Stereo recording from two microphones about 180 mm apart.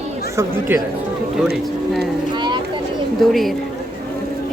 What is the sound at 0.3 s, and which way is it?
Speech, 15° right (ahead or behind).